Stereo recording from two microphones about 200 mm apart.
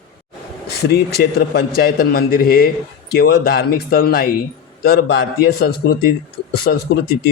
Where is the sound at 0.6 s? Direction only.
55° left (ahead or behind).